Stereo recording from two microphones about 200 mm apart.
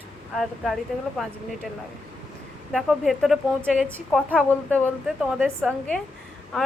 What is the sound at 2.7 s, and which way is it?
A woman's voice, centre (ahead or behind).